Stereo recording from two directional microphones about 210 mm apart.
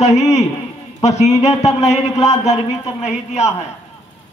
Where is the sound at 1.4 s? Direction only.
30° left (ahead or behind).